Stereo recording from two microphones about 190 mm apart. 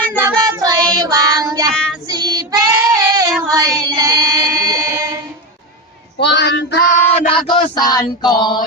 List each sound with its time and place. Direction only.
0.2 s child singing: 15° right (ahead or behind)
3.5 s female singing: 20° right (ahead or behind)
6.1 s speech: 60° left (ahead or behind)
6.9 s child singing: 30° left (ahead or behind)